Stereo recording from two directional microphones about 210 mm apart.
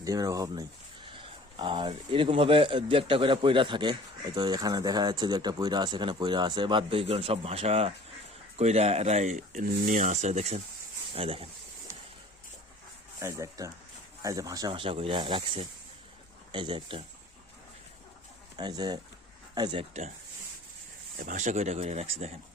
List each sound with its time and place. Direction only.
0.0 s speech: 15° right (ahead or behind)
13.1 s speech: 15° right (ahead or behind)
18.5 s speech: 20° right (ahead or behind)
19.9 s speech: 35° right (ahead or behind)
21.2 s speech: 35° right (ahead or behind)